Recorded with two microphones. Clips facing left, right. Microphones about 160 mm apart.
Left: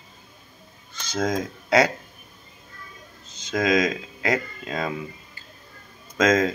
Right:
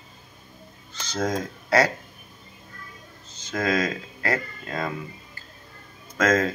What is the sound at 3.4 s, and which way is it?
Speech, 15° left (ahead or behind).